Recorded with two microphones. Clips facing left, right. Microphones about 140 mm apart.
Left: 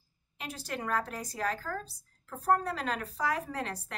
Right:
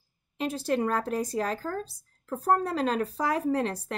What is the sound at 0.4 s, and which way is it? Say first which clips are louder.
Speech: right 11 dB; 25° right (ahead or behind).